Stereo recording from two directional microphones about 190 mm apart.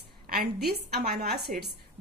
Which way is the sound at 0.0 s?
55° right (ahead or behind).